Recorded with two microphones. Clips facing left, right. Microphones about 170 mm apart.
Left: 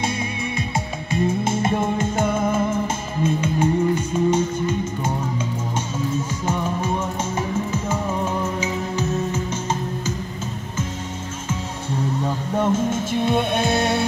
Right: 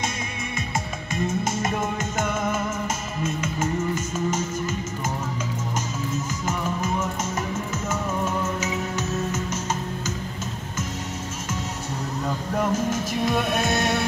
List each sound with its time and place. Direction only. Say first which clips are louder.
0.6 s music: left 3 dB; 30° left (ahead or behind)
6.1 s music: left 3 dB; 30° left (ahead or behind)
11.4 s music: left 4 dB; 30° left (ahead or behind)